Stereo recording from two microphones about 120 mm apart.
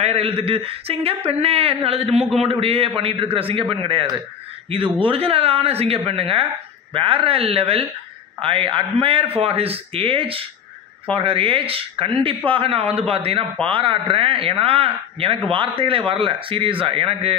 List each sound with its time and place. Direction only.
0.0 s speech: 60° right (ahead or behind)